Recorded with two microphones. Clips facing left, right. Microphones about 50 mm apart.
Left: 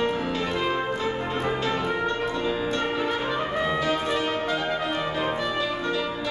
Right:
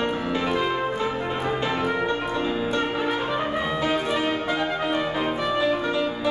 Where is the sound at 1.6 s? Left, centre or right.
Centre.